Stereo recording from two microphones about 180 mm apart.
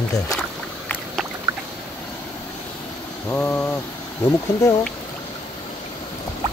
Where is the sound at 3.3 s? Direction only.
10° left (ahead or behind).